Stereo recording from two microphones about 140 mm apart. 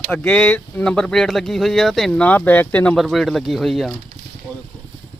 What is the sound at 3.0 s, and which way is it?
Speech, centre (ahead or behind).